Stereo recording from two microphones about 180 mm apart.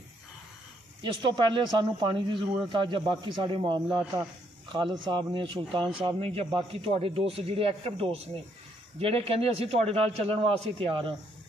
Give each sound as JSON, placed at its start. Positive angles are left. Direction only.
{"t": 1.0, "sound": "a man's voice", "side_deg": -25}